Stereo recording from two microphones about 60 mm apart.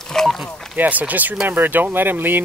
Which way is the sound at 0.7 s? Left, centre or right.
Right.